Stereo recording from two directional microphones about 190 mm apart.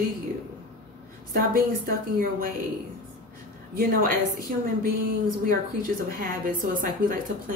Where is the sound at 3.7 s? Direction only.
50° right (ahead or behind).